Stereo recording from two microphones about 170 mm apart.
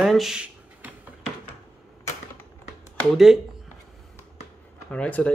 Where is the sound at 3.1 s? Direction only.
Centre (ahead or behind).